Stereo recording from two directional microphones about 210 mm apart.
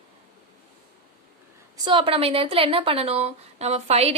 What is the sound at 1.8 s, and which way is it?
A woman's voice, 25° right (ahead or behind).